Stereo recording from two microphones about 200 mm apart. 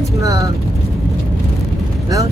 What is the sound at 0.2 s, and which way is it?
Speech, 15° right (ahead or behind).